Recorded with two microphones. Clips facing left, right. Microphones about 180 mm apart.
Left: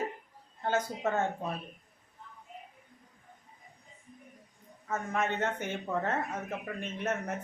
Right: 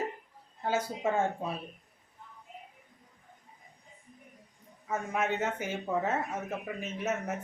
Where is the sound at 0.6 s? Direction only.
10° right (ahead or behind).